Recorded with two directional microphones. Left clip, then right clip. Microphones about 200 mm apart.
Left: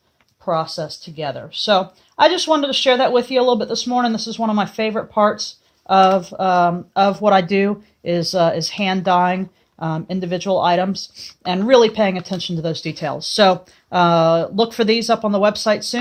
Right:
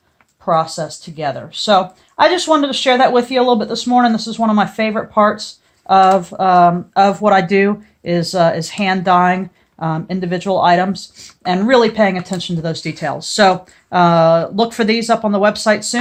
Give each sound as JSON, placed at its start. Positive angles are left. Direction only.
{"t": 0.4, "sound": "speech", "side_deg": 35}